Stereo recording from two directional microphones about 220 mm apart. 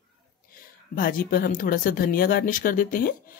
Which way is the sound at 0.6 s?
40° left (ahead or behind).